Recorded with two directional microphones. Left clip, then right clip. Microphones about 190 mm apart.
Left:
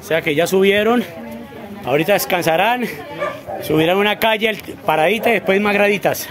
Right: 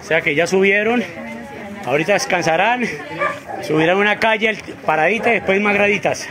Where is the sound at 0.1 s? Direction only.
10° left (ahead or behind).